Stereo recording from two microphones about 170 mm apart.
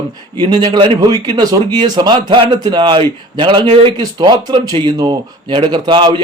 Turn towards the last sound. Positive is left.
turn(degrees=-25)  # may be behind; listen again after turning